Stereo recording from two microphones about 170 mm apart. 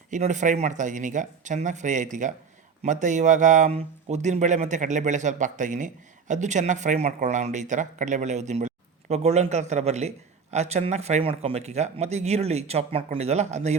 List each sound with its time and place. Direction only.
0.1 s a man's voice: 45° right (ahead or behind)